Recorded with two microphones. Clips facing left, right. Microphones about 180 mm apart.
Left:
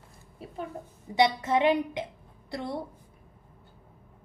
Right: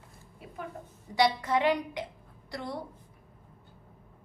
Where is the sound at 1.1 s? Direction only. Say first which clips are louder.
Left 2 dB; 25° left (ahead or behind).